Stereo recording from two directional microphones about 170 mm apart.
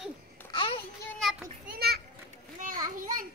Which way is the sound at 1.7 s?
65° right (ahead or behind).